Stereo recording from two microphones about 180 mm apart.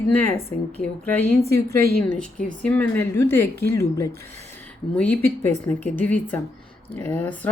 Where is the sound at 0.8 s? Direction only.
10° left (ahead or behind).